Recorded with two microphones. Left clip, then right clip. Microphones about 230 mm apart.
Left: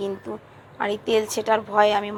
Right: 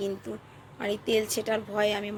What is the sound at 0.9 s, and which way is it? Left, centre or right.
Speech, left.